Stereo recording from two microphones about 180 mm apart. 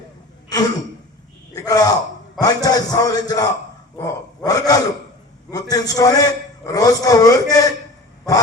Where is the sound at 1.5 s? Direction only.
20° left (ahead or behind).